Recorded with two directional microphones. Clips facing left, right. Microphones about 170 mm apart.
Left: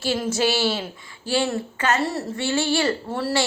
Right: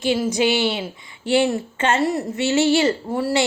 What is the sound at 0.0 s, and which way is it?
A woman's voice, 15° right (ahead or behind).